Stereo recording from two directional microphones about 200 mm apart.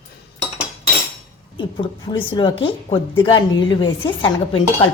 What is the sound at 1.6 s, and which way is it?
A woman's voice, 25° left (ahead or behind).